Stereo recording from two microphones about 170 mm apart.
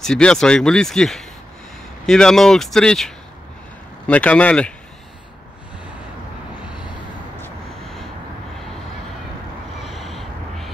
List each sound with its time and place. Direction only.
0.0 s speech: 5° left (ahead or behind)
4.1 s speech: 10° left (ahead or behind)
9.8 s a sound: centre (ahead or behind)